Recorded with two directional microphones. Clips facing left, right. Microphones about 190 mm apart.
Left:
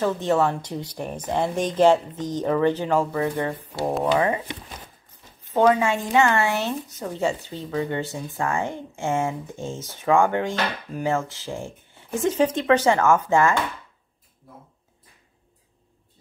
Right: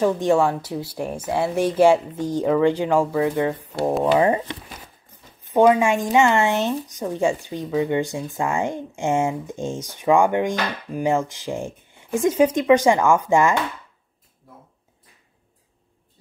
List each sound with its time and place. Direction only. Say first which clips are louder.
0.0 s speech: right 3 dB; 15° right (ahead or behind)
5.5 s speech: right 3 dB; 15° right (ahead or behind)